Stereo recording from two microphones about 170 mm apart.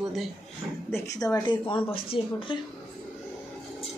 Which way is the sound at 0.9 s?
20° left (ahead or behind).